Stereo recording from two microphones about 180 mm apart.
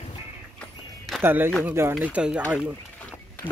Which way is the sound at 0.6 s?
Centre (ahead or behind).